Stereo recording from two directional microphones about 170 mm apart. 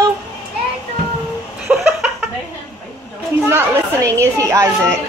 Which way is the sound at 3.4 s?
15° right (ahead or behind).